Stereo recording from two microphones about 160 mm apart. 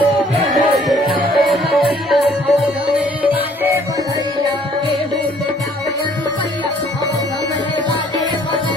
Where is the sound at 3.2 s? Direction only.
15° right (ahead or behind).